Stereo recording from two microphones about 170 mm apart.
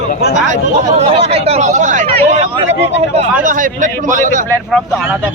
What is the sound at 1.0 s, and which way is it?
Speech, 35° right (ahead or behind).